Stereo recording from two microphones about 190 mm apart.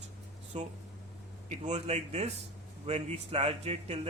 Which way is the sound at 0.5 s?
35° right (ahead or behind).